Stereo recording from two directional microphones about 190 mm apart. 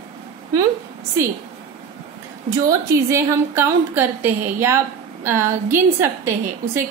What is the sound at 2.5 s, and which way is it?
A woman's voice, 15° right (ahead or behind).